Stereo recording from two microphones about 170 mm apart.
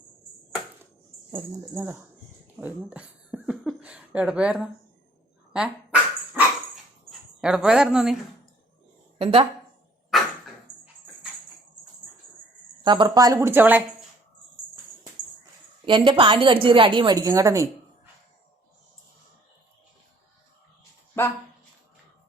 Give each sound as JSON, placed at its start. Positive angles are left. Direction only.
{"t": 1.7, "sound": "speech", "side_deg": -15}
{"t": 5.5, "sound": "dog", "side_deg": -5}
{"t": 7.1, "sound": "speech", "side_deg": -5}
{"t": 9.1, "sound": "a woman's voice", "side_deg": -35}
{"t": 10.1, "sound": "a sound", "side_deg": 0}
{"t": 12.8, "sound": "a woman's voice", "side_deg": -25}
{"t": 15.9, "sound": "a woman's voice", "side_deg": -30}